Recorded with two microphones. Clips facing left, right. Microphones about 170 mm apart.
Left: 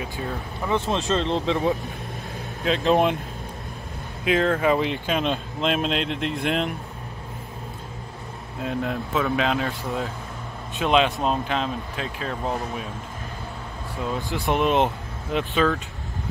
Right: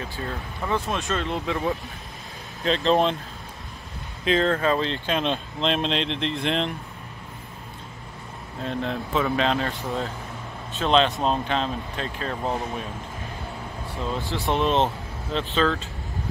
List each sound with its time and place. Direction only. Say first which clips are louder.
0.0 s speech: left 2 dB; 10° left (ahead or behind)
0.7 s speech: left 4 dB; 25° left (ahead or behind)
2.6 s speech: left 1 dB; 5° left (ahead or behind)
4.2 s speech: left 1 dB; 5° left (ahead or behind)
8.6 s speech: left 1 dB; 5° left (ahead or behind)
14.0 s speech: left 1 dB; 10° left (ahead or behind)